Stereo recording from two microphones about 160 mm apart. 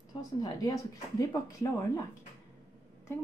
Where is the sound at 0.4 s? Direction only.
25° left (ahead or behind).